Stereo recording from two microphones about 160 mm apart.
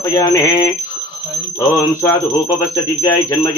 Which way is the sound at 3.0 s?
20° left (ahead or behind).